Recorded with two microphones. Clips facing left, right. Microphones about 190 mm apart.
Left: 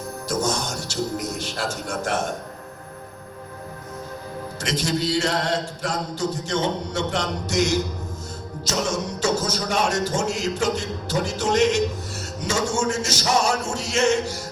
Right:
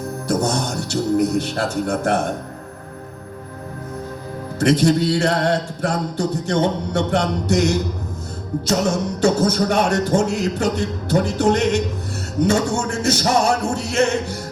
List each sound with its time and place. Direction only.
0.3 s mantra: 60° right (ahead or behind)
4.6 s mantra: 60° right (ahead or behind)
9.2 s mantra: 60° right (ahead or behind)